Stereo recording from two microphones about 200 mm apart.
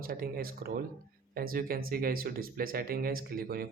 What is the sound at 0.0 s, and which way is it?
Speech, 45° right (ahead or behind).